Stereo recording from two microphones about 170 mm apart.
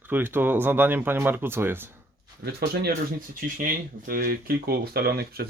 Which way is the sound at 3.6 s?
55° right (ahead or behind).